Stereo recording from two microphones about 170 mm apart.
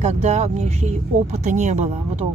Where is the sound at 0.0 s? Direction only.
40° right (ahead or behind).